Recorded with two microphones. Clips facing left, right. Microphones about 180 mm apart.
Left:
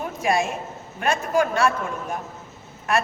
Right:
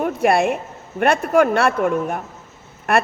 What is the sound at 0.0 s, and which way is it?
A man's voice, 60° right (ahead or behind).